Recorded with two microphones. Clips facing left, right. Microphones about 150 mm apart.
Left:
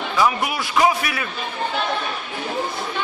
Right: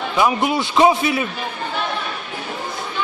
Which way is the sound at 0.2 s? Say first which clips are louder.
Right 3 dB; 20° right (ahead or behind).